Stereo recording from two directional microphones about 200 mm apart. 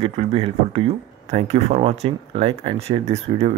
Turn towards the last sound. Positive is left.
turn(degrees=-30)  # may be behind; listen again after turning